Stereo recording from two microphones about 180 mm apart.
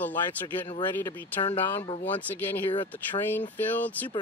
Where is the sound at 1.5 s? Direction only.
35° left (ahead or behind).